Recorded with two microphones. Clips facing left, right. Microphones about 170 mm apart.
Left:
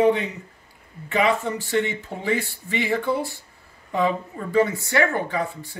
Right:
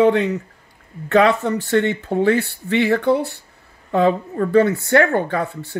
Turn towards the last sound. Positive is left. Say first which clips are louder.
# right 4 dB
turn(degrees=-65)  # may be behind; listen again after turning